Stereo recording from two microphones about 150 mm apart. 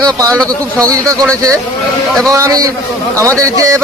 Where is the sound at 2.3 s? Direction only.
25° right (ahead or behind).